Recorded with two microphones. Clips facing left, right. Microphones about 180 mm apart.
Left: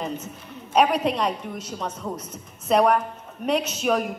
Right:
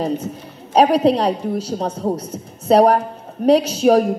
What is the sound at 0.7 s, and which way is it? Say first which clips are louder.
A woman's voice: right 7 dB; 30° right (ahead or behind).